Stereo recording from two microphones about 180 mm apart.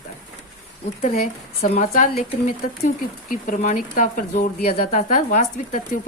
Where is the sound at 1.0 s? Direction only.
50° left (ahead or behind).